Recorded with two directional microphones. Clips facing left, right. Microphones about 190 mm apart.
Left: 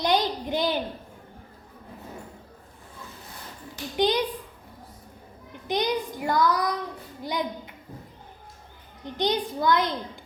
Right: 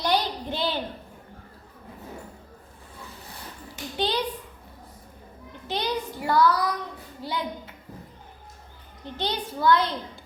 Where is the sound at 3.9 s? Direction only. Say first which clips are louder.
Left 4 dB; 15° left (ahead or behind).